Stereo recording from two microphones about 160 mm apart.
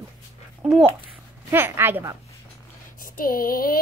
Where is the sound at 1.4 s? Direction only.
15° right (ahead or behind).